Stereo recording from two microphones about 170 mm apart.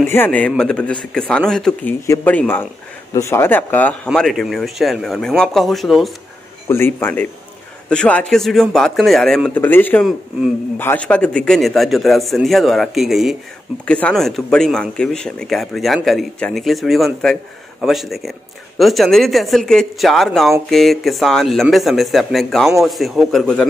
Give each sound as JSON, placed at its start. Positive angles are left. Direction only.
{"t": 0.1, "sound": "a man's voice", "side_deg": 10}
{"t": 6.7, "sound": "a man's voice", "side_deg": 15}